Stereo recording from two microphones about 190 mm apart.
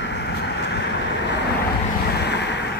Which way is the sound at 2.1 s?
60° left (ahead or behind).